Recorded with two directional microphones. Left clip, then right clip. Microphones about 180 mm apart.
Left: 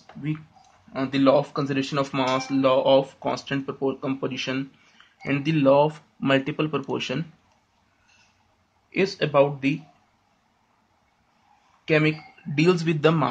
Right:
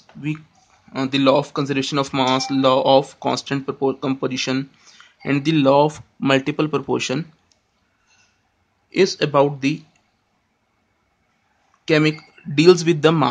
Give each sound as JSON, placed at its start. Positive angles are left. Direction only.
{"t": 0.9, "sound": "speech", "side_deg": -35}
{"t": 8.9, "sound": "speech", "side_deg": -40}
{"t": 11.8, "sound": "speech", "side_deg": -40}